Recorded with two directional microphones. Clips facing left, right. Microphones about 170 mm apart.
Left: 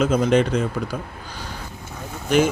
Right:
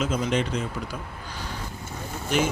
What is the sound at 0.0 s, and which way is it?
Speech, 45° left (ahead or behind).